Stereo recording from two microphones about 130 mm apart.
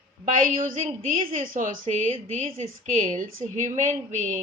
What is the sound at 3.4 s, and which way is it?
Speech, 55° right (ahead or behind).